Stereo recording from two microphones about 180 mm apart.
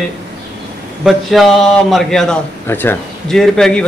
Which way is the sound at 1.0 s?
Centre (ahead or behind).